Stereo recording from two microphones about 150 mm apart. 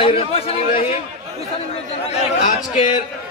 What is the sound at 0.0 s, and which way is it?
Speech, 40° left (ahead or behind).